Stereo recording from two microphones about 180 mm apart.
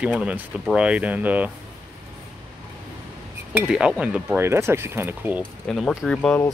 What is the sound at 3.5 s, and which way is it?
Speech, 5° right (ahead or behind).